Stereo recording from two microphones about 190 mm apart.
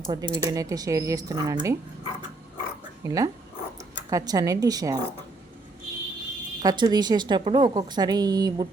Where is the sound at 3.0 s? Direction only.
15° right (ahead or behind).